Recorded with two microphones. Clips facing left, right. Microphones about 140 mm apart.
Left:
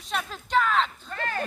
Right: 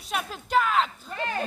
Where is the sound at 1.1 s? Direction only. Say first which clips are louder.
Right 1 dB; 15° right (ahead or behind).